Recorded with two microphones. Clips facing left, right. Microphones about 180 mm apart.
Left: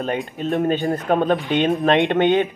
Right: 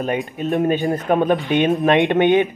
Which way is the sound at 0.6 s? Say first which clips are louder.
Right 2 dB; 15° right (ahead or behind).